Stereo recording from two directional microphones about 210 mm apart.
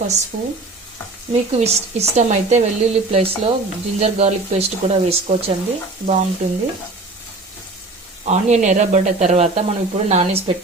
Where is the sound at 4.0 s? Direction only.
30° right (ahead or behind).